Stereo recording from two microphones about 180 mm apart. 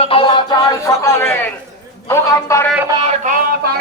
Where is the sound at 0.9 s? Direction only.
15° left (ahead or behind).